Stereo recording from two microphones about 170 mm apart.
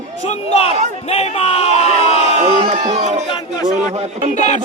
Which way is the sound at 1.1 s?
35° left (ahead or behind).